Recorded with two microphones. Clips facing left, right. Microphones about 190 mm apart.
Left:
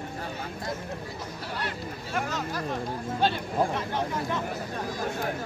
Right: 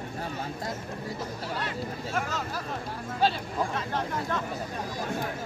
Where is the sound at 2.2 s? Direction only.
5° right (ahead or behind).